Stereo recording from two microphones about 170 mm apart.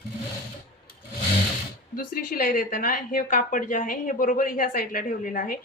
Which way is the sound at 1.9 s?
55° left (ahead or behind).